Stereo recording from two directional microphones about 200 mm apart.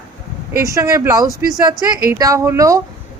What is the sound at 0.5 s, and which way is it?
A woman's voice, 15° right (ahead or behind).